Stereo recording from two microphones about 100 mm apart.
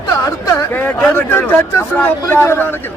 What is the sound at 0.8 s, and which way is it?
A man's voice, 20° left (ahead or behind).